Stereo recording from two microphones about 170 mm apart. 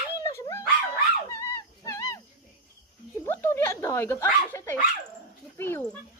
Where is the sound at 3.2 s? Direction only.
15° left (ahead or behind).